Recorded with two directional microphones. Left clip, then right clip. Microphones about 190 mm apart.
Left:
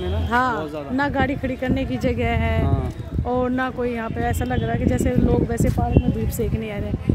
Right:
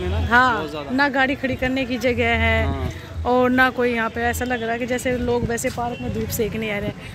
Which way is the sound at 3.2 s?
10° right (ahead or behind).